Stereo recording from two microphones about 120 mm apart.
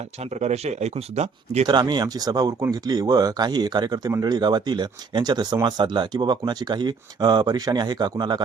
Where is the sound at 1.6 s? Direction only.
40° right (ahead or behind).